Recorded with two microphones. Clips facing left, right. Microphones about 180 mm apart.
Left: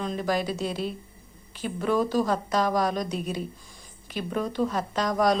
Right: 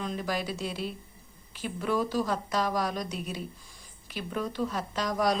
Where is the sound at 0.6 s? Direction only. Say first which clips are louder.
Left 5 dB; 40° left (ahead or behind).